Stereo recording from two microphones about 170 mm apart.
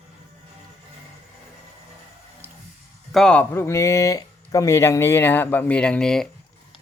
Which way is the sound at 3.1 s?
5° left (ahead or behind).